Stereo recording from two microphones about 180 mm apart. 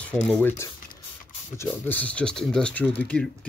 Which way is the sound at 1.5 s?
10° left (ahead or behind).